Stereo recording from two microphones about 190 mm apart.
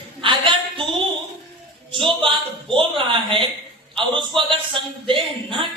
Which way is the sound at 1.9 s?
25° right (ahead or behind).